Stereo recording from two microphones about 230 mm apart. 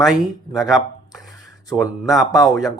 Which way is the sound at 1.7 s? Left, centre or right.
Centre.